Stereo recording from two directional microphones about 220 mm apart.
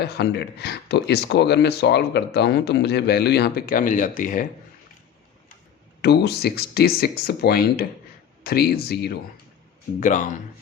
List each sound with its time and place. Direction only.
0.0 s speech: 45° left (ahead or behind)
6.0 s speech: 45° left (ahead or behind)
10.0 s speech: 35° left (ahead or behind)